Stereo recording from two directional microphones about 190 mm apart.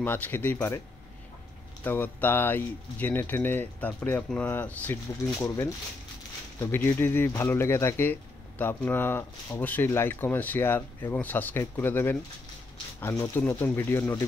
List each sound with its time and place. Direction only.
0.0 s speech: 10° left (ahead or behind)
1.9 s speech: 10° left (ahead or behind)